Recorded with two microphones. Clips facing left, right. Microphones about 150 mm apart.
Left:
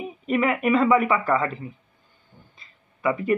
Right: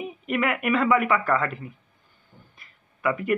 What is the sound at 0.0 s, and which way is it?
A man's voice, 25° left (ahead or behind).